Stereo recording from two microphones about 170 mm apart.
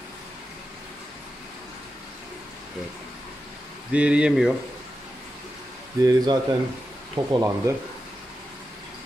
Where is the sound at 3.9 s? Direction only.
5° right (ahead or behind).